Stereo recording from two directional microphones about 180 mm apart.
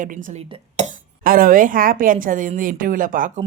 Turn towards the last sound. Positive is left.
turn(degrees=-50)  # may be behind; listen again after turning